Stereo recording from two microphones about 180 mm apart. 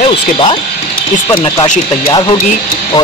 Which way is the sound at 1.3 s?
25° left (ahead or behind).